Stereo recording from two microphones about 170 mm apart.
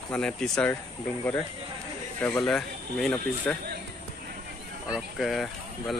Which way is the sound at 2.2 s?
5° left (ahead or behind).